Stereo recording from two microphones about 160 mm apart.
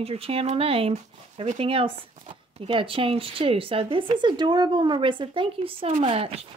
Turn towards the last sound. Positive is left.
turn(degrees=-35)  # may be behind; listen again after turning